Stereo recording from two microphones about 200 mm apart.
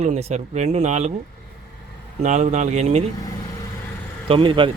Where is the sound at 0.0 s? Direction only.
30° right (ahead or behind).